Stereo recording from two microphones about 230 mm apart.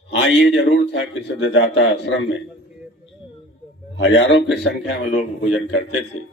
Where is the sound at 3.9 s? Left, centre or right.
Left.